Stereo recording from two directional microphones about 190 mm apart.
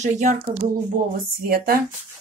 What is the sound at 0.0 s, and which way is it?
Speech, 40° right (ahead or behind).